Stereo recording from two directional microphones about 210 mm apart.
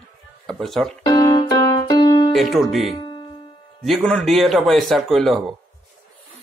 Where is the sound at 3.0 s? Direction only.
20° left (ahead or behind).